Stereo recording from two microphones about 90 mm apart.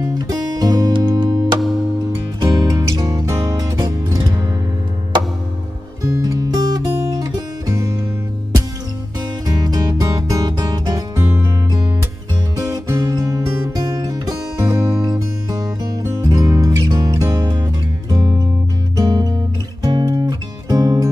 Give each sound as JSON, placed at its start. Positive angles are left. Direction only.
{"t": 0.0, "sound": "music", "side_deg": -45}
{"t": 1.1, "sound": "music", "side_deg": -60}
{"t": 2.7, "sound": "music", "side_deg": -40}
{"t": 6.0, "sound": "music", "side_deg": -40}
{"t": 9.6, "sound": "music", "side_deg": -45}
{"t": 12.5, "sound": "music", "side_deg": -40}
{"t": 18.9, "sound": "guitar", "side_deg": -45}
{"t": 20.7, "sound": "music", "side_deg": -40}